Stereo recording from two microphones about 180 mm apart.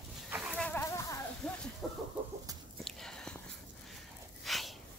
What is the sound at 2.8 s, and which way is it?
Whispering, 5° left (ahead or behind).